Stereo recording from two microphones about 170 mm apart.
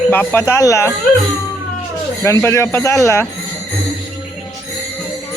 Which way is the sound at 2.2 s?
15° left (ahead or behind).